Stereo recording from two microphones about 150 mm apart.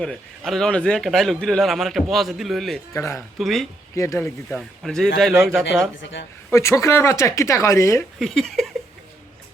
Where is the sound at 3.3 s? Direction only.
Centre (ahead or behind).